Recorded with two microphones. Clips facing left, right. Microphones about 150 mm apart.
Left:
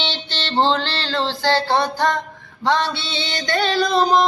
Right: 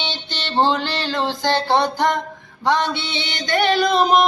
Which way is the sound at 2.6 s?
15° right (ahead or behind).